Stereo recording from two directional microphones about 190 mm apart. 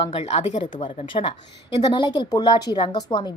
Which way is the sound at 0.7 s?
25° left (ahead or behind).